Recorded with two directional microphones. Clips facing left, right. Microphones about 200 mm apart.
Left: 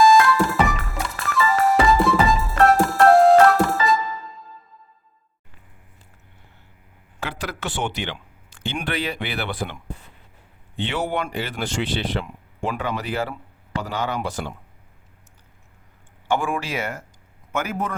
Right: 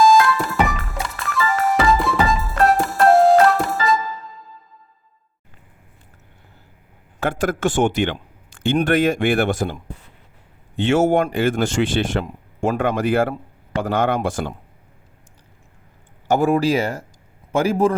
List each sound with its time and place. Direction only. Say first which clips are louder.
0.0 s music: right 1 dB; centre (ahead or behind)
7.2 s a man's voice: right 10 dB; 50° right (ahead or behind)
10.8 s speech: right 9 dB; 45° right (ahead or behind)
16.2 s speech: right 8 dB; 40° right (ahead or behind)